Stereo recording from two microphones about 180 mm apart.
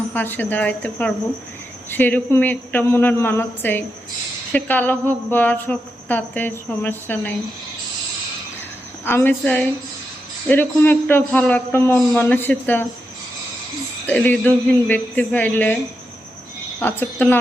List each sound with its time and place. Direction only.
0.1 s speech: 10° left (ahead or behind)
9.0 s speech: 10° left (ahead or behind)
14.1 s speech: 10° left (ahead or behind)
16.8 s speech: 10° left (ahead or behind)